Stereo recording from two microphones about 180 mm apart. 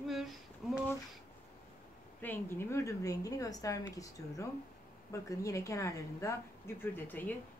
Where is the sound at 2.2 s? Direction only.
10° left (ahead or behind).